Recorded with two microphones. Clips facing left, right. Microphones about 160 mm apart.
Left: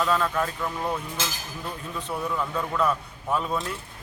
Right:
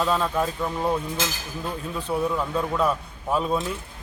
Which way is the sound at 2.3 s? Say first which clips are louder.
Right 3 dB; 25° right (ahead or behind).